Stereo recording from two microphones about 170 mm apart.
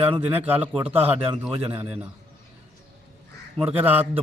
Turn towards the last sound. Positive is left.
turn(degrees=-10)  # may be behind; listen again after turning